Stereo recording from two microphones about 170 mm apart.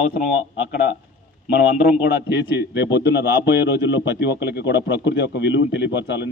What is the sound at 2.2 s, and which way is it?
A man's voice, 90° left.